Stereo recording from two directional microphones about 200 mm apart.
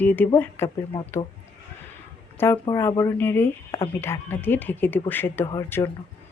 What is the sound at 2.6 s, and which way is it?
Speech, 15° left (ahead or behind).